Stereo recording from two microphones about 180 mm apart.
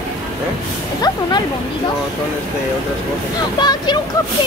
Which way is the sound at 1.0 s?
25° left (ahead or behind).